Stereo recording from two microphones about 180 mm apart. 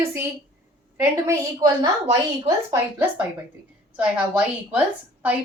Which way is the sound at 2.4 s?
10° right (ahead or behind).